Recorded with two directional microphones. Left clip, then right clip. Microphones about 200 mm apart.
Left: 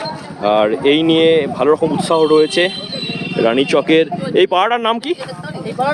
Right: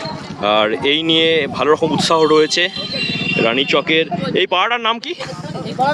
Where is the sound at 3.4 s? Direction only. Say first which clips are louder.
Left 4 dB; 30° left (ahead or behind).